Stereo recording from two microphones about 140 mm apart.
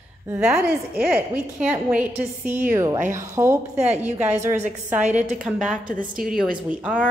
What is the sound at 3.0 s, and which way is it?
A woman's voice, 20° right (ahead or behind).